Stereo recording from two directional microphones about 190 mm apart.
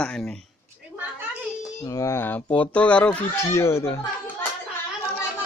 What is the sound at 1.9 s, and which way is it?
A child's voice, 15° left (ahead or behind).